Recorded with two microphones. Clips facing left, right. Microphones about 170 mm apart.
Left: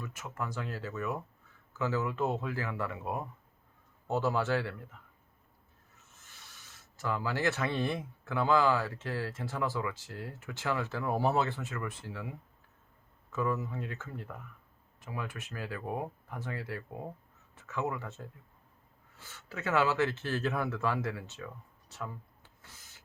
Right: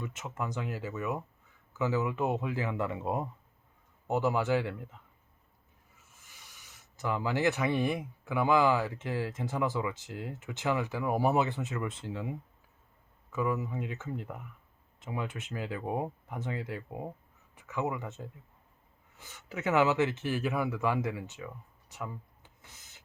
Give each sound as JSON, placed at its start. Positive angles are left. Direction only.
{"t": 0.0, "sound": "speech", "side_deg": -20}
{"t": 6.0, "sound": "speech", "side_deg": -10}
{"t": 13.3, "sound": "speech", "side_deg": -15}